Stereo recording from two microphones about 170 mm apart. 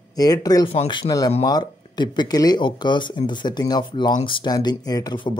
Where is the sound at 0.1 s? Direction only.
20° left (ahead or behind).